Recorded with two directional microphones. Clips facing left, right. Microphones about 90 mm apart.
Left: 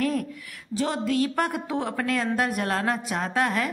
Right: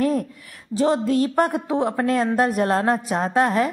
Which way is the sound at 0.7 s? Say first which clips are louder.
Right 6 dB; 30° right (ahead or behind).